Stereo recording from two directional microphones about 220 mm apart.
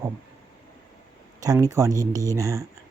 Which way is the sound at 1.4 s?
15° right (ahead or behind).